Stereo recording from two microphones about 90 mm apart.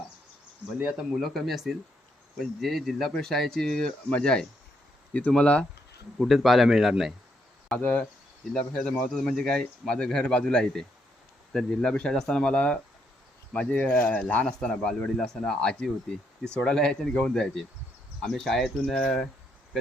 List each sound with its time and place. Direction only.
0.8 s speech: 5° right (ahead or behind); by 5.6 s 10° left (ahead or behind)
6.1 s speech: centre (ahead or behind)
7.8 s speech: 15° left (ahead or behind)